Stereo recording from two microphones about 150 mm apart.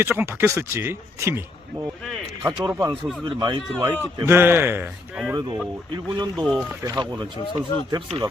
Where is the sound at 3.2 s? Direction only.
35° right (ahead or behind).